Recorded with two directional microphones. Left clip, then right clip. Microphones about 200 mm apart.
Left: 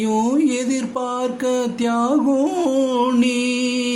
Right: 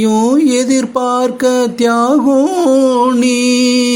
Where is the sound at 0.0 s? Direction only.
30° right (ahead or behind).